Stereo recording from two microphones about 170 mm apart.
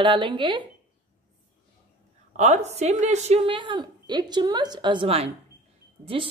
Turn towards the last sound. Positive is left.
turn(degrees=-30)  # may be behind; listen again after turning